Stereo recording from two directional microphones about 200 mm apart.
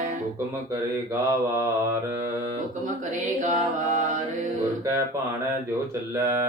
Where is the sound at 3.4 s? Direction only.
35° right (ahead or behind).